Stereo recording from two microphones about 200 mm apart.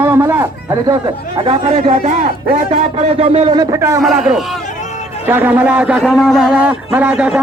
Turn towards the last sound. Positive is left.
turn(degrees=-5)  # may be behind; listen again after turning